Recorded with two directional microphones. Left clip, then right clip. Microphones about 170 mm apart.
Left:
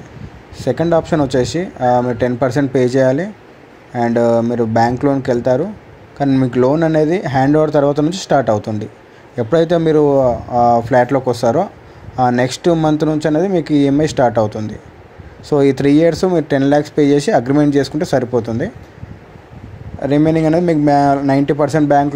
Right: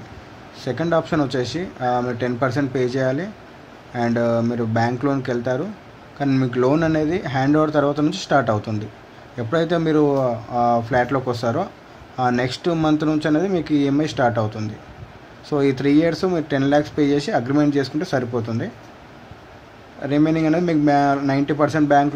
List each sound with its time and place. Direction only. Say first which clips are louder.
0.6 s speech: left 6 dB; 30° left (ahead or behind)
6.2 s speech: left 6 dB; 15° left (ahead or behind)
6.9 s speech: left 7 dB; 30° left (ahead or behind)
20.2 s speech: left 7 dB; 30° left (ahead or behind)